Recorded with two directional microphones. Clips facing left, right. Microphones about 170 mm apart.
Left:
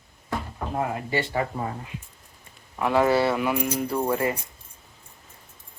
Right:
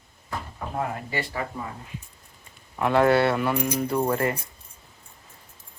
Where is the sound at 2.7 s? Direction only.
Centre (ahead or behind).